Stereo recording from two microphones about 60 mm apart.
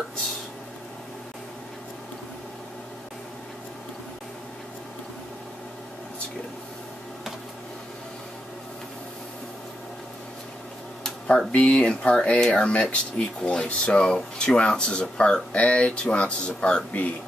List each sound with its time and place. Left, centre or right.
11.2 s speech: centre